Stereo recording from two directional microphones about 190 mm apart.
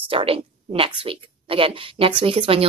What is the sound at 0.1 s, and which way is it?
A woman's voice, 30° right (ahead or behind).